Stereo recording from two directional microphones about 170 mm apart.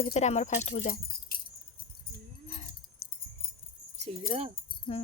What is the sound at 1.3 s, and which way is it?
Keys jangling, 60° left (ahead or behind).